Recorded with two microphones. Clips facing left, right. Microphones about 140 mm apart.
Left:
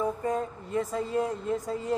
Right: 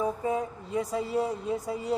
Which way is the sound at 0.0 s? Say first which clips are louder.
Even; 10° right (ahead or behind).